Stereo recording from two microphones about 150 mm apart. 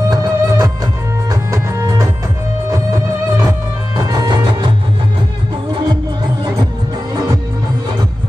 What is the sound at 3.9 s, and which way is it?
Music, 25° right (ahead or behind).